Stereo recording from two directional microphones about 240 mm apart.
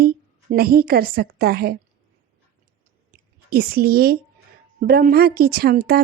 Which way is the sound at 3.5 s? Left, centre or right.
Right.